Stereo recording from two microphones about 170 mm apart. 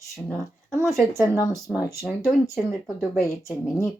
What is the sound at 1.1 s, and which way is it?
Speech, 20° left (ahead or behind).